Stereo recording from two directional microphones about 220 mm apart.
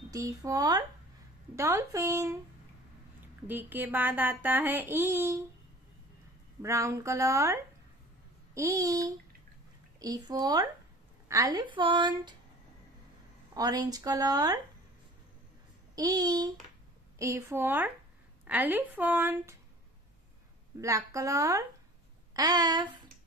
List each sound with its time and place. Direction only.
0.1 s speech: 15° right (ahead or behind)
3.4 s speech: 10° right (ahead or behind)
6.6 s a woman's voice: 15° right (ahead or behind)
13.6 s speech: 15° right (ahead or behind)
15.9 s speech: 15° right (ahead or behind)
20.8 s speech: 15° right (ahead or behind)